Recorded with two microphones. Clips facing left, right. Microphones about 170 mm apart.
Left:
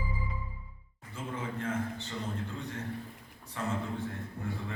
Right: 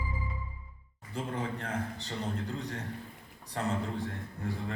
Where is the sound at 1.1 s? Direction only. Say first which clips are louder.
Right 3 dB; 35° right (ahead or behind).